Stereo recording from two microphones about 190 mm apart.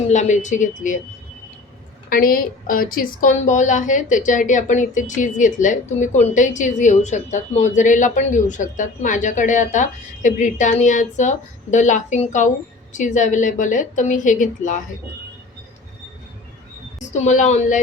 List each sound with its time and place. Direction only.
0.1 s speech: 40° left (ahead or behind)
2.0 s speech: 45° left (ahead or behind)
17.0 s a woman's voice: 40° left (ahead or behind)